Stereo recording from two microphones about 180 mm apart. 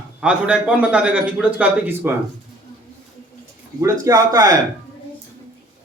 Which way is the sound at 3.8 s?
20° right (ahead or behind).